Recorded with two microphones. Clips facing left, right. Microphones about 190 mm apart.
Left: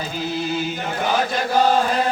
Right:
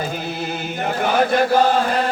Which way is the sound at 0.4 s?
55° right (ahead or behind).